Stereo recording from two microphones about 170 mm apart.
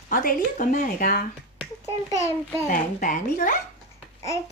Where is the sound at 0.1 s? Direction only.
55° left (ahead or behind).